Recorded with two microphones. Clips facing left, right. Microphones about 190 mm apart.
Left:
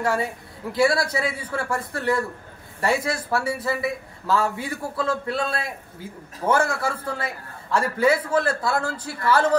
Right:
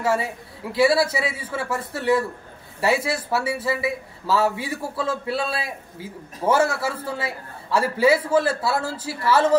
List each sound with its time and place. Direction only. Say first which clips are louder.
0.0 s a man's voice: right 1 dB; 5° right (ahead or behind)